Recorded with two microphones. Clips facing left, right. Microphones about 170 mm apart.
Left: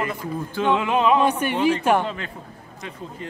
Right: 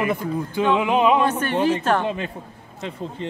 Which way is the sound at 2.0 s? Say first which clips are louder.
Right 5 dB; 20° right (ahead or behind).